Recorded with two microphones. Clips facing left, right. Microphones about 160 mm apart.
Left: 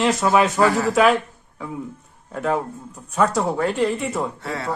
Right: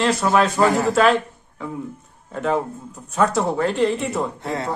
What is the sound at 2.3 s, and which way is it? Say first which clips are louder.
Speech: right 1 dB; centre (ahead or behind).